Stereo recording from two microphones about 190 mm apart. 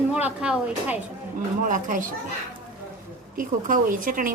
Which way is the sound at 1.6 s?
45° right (ahead or behind).